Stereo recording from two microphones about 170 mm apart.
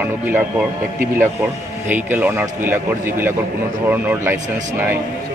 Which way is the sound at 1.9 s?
10° right (ahead or behind).